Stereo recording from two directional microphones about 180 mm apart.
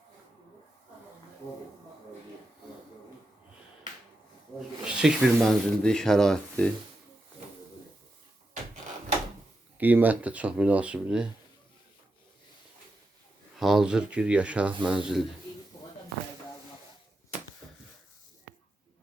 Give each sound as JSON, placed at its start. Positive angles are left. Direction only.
{"t": 4.9, "sound": "speech", "side_deg": -5}
{"t": 9.7, "sound": "speech", "side_deg": -10}
{"t": 13.6, "sound": "speech", "side_deg": 0}
{"t": 17.6, "sound": "a sound", "side_deg": 5}